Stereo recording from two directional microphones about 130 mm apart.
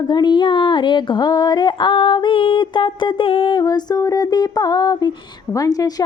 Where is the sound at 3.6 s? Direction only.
30° left (ahead or behind).